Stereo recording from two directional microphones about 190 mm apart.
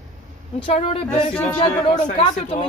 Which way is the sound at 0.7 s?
30° left (ahead or behind).